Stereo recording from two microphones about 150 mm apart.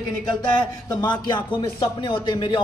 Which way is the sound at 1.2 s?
30° left (ahead or behind).